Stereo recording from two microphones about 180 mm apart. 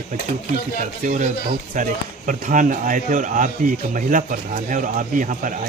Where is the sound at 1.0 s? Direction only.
45° right (ahead or behind).